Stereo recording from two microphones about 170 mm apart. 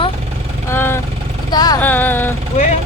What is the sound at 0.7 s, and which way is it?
Vehicle, 15° left (ahead or behind).